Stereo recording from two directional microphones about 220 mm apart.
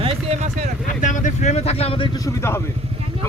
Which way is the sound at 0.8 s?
35° left (ahead or behind).